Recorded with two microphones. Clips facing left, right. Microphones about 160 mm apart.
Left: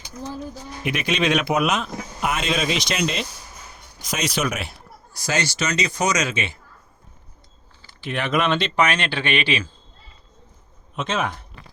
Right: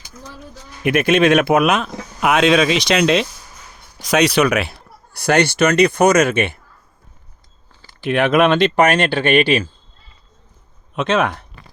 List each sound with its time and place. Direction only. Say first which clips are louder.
0.9 s speech: right 9 dB; 55° right (ahead or behind); by 3.2 s 90° right
4.0 s speech: right 10 dB; 70° right (ahead or behind); by 6.6 s 55° right (ahead or behind)
8.0 s speech: right 8 dB; 60° right (ahead or behind)
10.9 s speech: right 7 dB; 65° right (ahead or behind)